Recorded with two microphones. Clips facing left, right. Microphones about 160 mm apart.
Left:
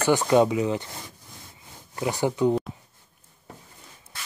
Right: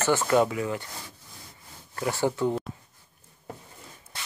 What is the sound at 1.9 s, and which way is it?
Speech, 15° left (ahead or behind).